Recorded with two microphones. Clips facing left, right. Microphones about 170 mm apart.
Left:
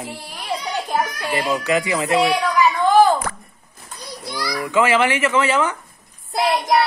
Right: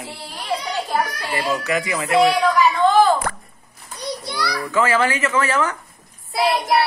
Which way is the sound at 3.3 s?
60° right (ahead or behind).